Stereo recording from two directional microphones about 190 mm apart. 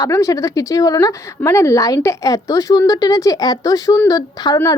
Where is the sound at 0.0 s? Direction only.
15° left (ahead or behind).